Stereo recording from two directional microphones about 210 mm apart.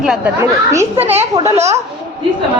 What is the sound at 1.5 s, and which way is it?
Speech, 30° right (ahead or behind).